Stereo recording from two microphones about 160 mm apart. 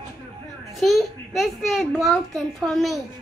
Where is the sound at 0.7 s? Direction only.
Centre (ahead or behind).